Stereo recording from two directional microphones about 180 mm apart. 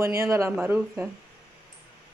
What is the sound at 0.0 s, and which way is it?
Speech, 15° right (ahead or behind).